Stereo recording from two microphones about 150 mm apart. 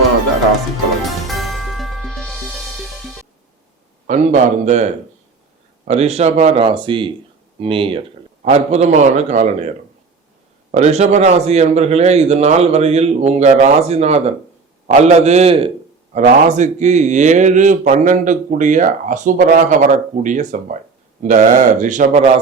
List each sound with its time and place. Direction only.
1.0 s music: centre (ahead or behind)
4.0 s speech: 50° right (ahead or behind)
5.9 s speech: 45° right (ahead or behind)
10.8 s speech: 50° right (ahead or behind)
16.1 s a man's voice: 50° right (ahead or behind)